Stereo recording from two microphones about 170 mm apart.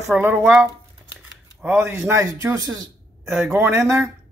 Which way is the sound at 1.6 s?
15° right (ahead or behind).